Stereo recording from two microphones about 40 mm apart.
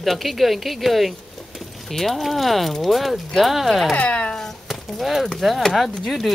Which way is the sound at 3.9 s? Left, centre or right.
Left.